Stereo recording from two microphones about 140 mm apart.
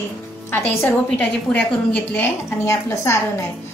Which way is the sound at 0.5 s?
20° left (ahead or behind).